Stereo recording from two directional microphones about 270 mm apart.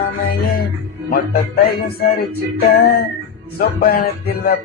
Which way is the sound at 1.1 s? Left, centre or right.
Left.